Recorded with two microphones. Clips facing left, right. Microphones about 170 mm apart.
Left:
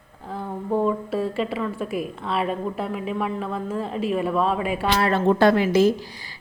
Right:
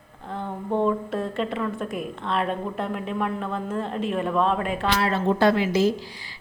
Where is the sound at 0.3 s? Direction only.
5° left (ahead or behind).